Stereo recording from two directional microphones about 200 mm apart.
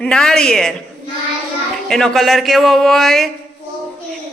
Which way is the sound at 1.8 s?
Centre (ahead or behind).